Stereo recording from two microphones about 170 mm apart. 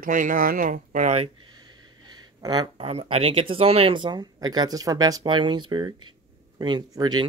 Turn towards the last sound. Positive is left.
turn(degrees=-25)  # may be behind; listen again after turning